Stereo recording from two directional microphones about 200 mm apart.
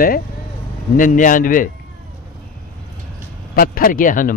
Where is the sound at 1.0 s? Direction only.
40° left (ahead or behind).